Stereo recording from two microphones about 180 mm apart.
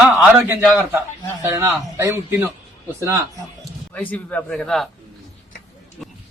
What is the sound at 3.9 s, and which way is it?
Speech, 10° left (ahead or behind).